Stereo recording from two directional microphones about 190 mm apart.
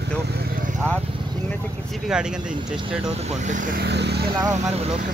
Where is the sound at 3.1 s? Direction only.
40° right (ahead or behind); by 4.2 s 60° right (ahead or behind).